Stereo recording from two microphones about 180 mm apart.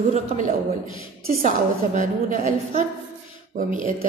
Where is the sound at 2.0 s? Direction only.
45° right (ahead or behind).